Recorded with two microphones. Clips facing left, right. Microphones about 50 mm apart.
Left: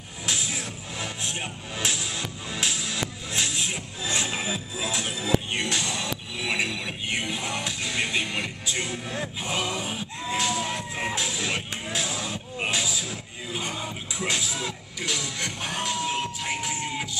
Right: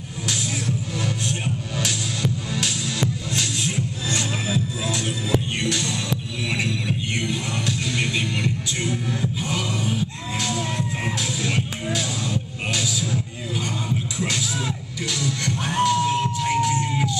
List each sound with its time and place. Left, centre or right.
0.3 s music: centre
3.3 s music: centre